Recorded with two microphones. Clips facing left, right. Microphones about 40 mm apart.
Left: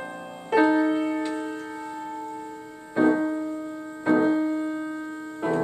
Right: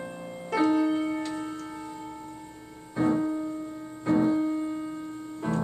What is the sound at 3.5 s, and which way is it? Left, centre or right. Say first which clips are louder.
Music: left 3 dB; left.